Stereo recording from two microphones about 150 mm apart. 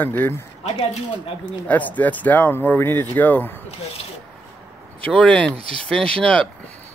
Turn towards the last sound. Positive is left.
turn(degrees=5)  # may be behind; listen again after turning